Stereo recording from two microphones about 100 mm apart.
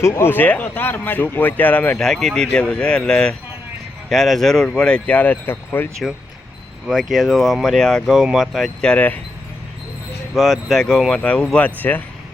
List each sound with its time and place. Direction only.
0.0 s speech: 25° left (ahead or behind)
2.0 s speech: 5° left (ahead or behind); by 5.9 s 20° left (ahead or behind)
6.8 s speech: 5° right (ahead or behind)
8.9 s speech: 15° left (ahead or behind)
10.3 s speech: centre (ahead or behind); by 12.0 s 20° left (ahead or behind)